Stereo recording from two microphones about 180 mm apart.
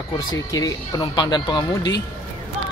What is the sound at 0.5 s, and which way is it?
Speech, 20° left (ahead or behind).